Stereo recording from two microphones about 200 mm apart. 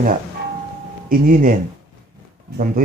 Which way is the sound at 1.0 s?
45° right (ahead or behind).